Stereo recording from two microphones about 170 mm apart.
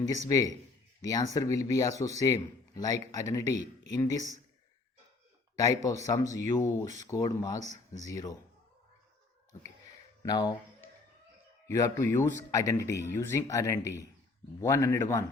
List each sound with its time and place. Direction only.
0.3 s a man's voice: 20° left (ahead or behind)
5.5 s a man's voice: 20° left (ahead or behind)
10.2 s a man's voice: 25° left (ahead or behind)
11.7 s speech: 15° left (ahead or behind)